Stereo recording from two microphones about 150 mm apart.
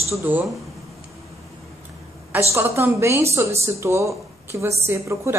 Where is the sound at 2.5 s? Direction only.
20° right (ahead or behind).